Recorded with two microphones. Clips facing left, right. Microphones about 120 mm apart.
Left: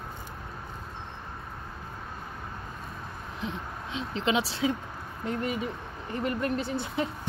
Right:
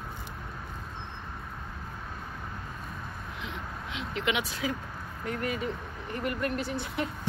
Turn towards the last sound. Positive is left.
turn(degrees=30)  # may be behind; listen again after turning